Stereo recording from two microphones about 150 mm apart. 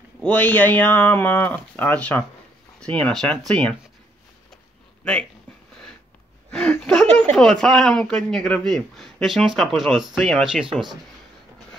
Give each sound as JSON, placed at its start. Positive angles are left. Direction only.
{"t": 0.2, "sound": "speech", "side_deg": 10}
{"t": 6.5, "sound": "a sound", "side_deg": 5}
{"t": 7.2, "sound": "speech", "side_deg": 5}